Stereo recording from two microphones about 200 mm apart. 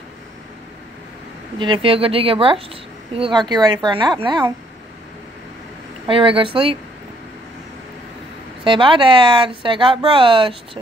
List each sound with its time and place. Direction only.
1.6 s speech: 25° right (ahead or behind)
6.0 s speech: 25° right (ahead or behind)
8.6 s speech: 25° right (ahead or behind)